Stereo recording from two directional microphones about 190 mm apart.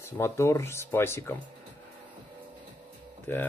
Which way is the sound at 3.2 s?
10° left (ahead or behind).